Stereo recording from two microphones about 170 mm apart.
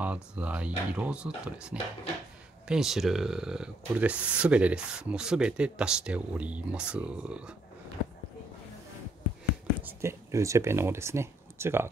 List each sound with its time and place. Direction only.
0.0 s speech: 10° right (ahead or behind)
9.8 s speech: 15° right (ahead or behind)